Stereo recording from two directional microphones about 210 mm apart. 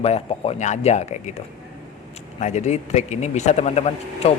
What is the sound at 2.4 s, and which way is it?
Speech, 35° left (ahead or behind).